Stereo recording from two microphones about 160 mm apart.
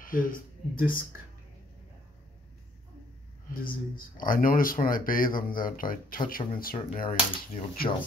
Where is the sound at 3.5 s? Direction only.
60° left (ahead or behind).